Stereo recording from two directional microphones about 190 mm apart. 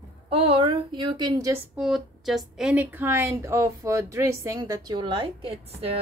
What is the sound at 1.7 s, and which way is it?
Speech, centre (ahead or behind).